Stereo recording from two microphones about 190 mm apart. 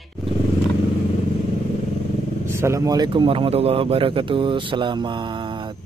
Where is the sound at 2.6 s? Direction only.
20° right (ahead or behind).